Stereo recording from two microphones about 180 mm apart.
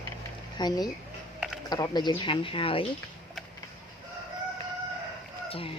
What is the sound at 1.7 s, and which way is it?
Speech, 25° left (ahead or behind).